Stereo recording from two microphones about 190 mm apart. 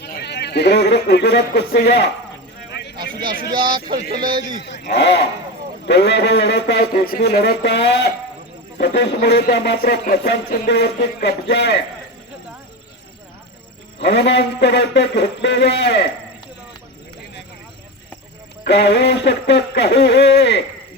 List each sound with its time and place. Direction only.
0.0 s a man's voice: 60° left (ahead or behind)
2.9 s vehicle: 50° right (ahead or behind)
4.6 s speech: 65° left (ahead or behind)
14.0 s speech: 65° left (ahead or behind)
18.6 s speech: 65° left (ahead or behind)